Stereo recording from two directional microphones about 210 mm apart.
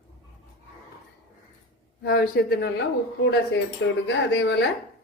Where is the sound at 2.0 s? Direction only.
50° left (ahead or behind).